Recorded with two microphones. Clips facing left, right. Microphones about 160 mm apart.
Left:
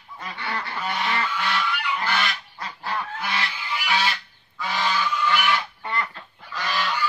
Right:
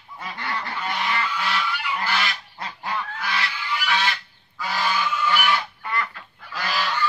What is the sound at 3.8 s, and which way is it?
Goose, 10° left (ahead or behind).